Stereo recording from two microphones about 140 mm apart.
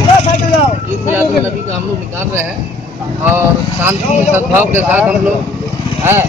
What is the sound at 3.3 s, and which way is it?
A man's voice, 15° right (ahead or behind).